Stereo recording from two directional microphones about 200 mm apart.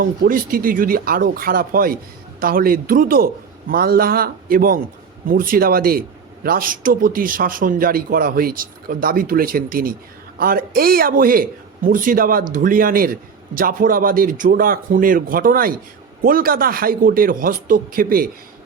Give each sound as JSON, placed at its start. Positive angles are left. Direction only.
{"t": 0.0, "sound": "speech", "side_deg": -45}